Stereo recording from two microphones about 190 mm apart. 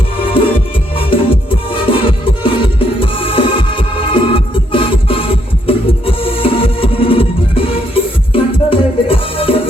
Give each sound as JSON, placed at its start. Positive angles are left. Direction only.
{"t": 0.2, "sound": "music", "side_deg": 30}